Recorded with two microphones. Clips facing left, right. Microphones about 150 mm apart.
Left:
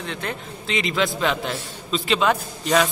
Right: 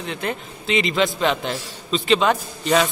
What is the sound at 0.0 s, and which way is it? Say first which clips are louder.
A man's voice: right 3 dB; 5° right (ahead or behind).